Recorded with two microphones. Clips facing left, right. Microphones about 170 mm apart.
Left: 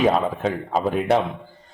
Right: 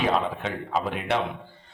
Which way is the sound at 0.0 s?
45° left (ahead or behind).